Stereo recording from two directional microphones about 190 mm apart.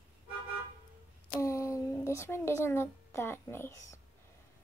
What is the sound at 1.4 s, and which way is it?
A child's voice, 15° left (ahead or behind).